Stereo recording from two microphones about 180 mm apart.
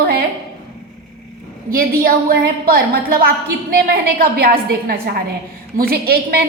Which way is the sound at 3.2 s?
55° right (ahead or behind).